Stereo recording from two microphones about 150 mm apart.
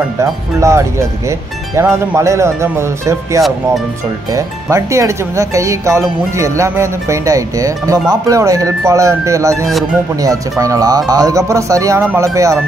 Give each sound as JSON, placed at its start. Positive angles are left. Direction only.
{"t": 0.2, "sound": "speech", "side_deg": -20}